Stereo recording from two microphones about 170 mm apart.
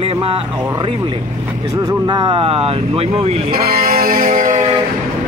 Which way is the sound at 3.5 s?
60° right (ahead or behind).